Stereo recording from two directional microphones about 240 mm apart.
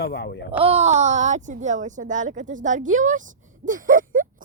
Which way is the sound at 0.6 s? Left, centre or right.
Right.